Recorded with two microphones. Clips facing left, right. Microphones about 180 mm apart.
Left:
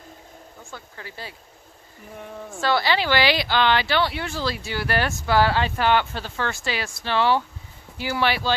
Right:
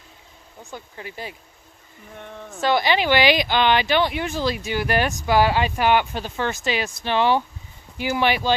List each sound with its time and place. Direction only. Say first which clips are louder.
0.6 s speech: right 5 dB; 20° right (ahead or behind)
2.1 s speech: left 1 dB; 5° left (ahead or behind)
2.6 s speech: right 2 dB; 20° right (ahead or behind)